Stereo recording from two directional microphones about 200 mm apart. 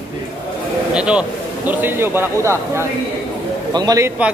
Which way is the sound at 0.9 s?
5° right (ahead or behind).